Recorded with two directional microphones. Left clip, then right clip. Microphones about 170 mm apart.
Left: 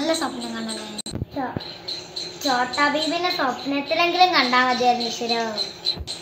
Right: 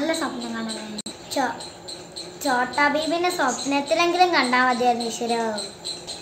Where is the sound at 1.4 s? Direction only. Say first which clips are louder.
Right 5 dB; 35° right (ahead or behind).